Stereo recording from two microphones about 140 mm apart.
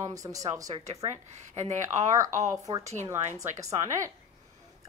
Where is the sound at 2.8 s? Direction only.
55° right (ahead or behind).